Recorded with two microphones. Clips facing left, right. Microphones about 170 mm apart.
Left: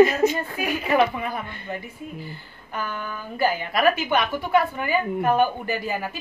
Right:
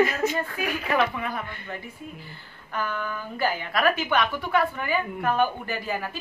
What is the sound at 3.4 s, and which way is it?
A woman's voice, 15° left (ahead or behind).